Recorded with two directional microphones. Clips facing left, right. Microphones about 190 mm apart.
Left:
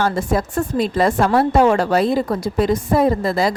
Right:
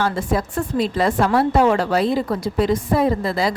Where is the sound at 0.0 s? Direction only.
45° left (ahead or behind).